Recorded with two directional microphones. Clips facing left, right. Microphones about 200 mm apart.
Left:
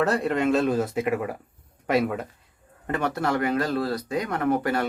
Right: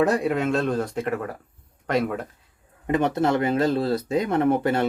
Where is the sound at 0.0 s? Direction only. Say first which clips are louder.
Right 2 dB; 10° right (ahead or behind); by 2.2 s 5° left (ahead or behind).